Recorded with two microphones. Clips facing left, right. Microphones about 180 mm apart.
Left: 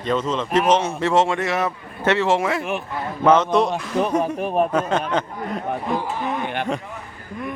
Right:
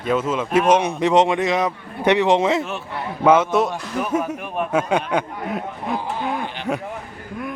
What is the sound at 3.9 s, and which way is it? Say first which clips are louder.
Speech: left 4 dB; 20° left (ahead or behind).